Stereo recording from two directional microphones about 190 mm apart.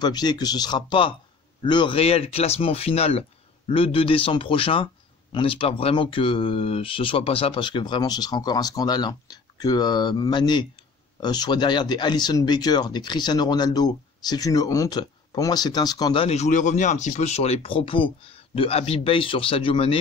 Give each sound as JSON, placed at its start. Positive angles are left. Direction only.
{"t": 0.0, "sound": "speech", "side_deg": 20}